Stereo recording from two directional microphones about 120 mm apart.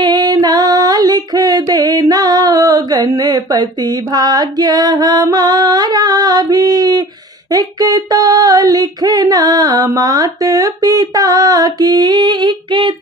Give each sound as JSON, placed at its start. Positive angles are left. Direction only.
{"t": 0.0, "sound": "female singing", "side_deg": -35}